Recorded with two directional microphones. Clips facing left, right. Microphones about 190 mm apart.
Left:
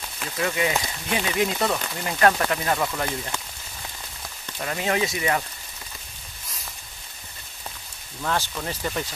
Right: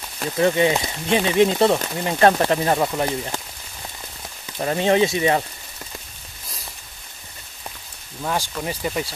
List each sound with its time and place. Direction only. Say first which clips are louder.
0.2 s speech: right 8 dB; 30° right (ahead or behind)
4.6 s speech: right 7 dB; 30° right (ahead or behind)
8.2 s speech: right 2 dB; 15° right (ahead or behind)